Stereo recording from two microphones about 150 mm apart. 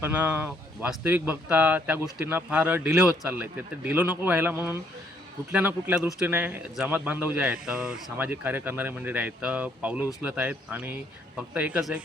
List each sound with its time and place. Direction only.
0.0 s speech: 10° right (ahead or behind)